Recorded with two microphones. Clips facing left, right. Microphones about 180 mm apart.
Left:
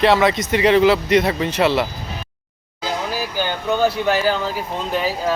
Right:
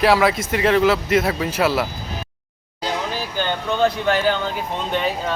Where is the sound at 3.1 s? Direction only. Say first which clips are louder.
Left 1 dB; 5° left (ahead or behind).